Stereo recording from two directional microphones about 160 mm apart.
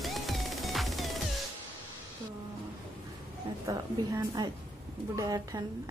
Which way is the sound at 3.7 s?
20° right (ahead or behind).